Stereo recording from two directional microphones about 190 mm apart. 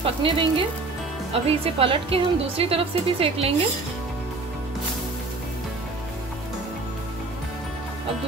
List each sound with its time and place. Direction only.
0.0 s a woman's voice: 30° right (ahead or behind)